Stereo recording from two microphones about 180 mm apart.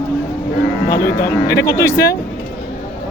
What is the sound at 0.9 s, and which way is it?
Speech, 15° left (ahead or behind).